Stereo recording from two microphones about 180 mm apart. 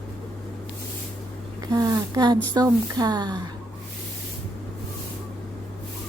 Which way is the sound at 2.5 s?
20° right (ahead or behind).